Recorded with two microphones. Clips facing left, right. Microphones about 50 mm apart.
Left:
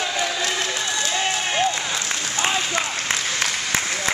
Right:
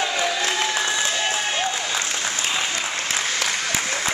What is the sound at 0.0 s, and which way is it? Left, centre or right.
Crowd, centre.